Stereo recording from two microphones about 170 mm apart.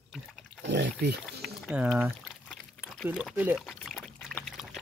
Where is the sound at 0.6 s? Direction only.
75° right (ahead or behind).